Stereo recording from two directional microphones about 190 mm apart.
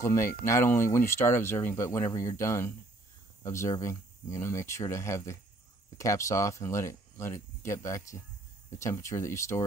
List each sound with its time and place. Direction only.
0.0 s speech: 15° left (ahead or behind)